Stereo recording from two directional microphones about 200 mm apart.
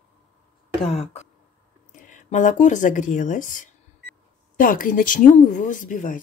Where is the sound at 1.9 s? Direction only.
40° left (ahead or behind).